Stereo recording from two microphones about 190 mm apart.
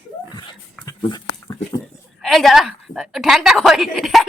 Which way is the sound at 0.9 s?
20° left (ahead or behind).